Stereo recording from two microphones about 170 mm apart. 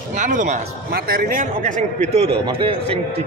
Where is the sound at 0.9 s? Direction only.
65° right (ahead or behind).